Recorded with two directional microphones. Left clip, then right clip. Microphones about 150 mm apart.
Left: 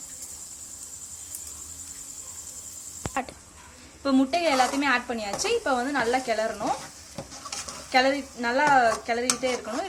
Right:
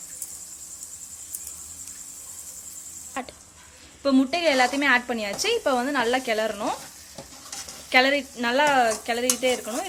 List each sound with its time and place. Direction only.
4.0 s speech: 50° right (ahead or behind)
7.9 s speech: 45° right (ahead or behind)